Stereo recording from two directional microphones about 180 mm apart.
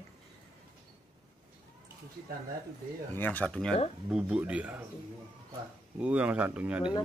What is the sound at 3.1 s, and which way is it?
A man's voice, 10° left (ahead or behind).